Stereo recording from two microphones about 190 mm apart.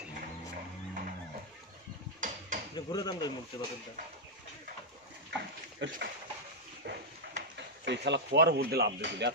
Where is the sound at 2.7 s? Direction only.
20° left (ahead or behind).